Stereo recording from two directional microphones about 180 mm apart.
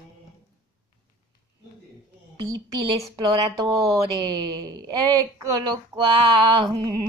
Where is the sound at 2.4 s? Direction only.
20° right (ahead or behind).